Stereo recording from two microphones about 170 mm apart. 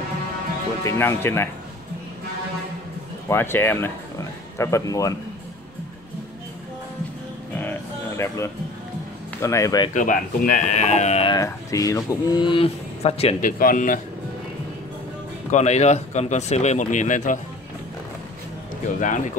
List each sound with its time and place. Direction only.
0.8 s speech: 15° left (ahead or behind)
3.3 s speech: 15° left (ahead or behind)
9.4 s speech: 15° left (ahead or behind)
9.9 s speech: 45° left (ahead or behind)
11.2 s speech: 20° left (ahead or behind); by 13.4 s 35° left (ahead or behind)
13.4 s speech: 55° left (ahead or behind)
15.5 s speech: 40° left (ahead or behind)
18.9 s speech: 50° left (ahead or behind)